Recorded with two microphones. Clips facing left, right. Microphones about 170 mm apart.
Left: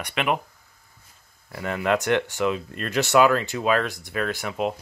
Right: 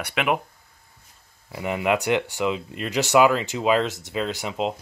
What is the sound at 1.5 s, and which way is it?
Speech, 15° right (ahead or behind).